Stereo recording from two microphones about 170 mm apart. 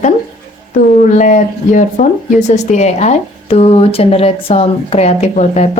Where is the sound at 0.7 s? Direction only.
50° left (ahead or behind).